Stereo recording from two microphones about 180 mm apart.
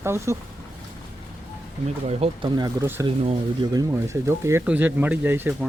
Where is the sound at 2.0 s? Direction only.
35° right (ahead or behind); by 3.0 s 15° right (ahead or behind).